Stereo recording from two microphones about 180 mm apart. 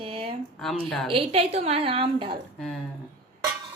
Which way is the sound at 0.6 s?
Centre (ahead or behind).